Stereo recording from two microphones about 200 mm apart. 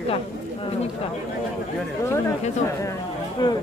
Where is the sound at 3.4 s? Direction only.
20° left (ahead or behind).